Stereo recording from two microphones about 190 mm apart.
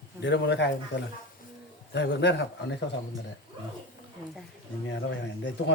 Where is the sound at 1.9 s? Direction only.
65° left (ahead or behind).